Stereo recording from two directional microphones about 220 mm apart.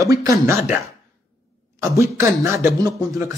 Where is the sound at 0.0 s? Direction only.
15° right (ahead or behind).